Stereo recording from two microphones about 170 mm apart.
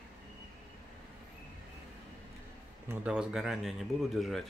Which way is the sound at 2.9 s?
5° right (ahead or behind).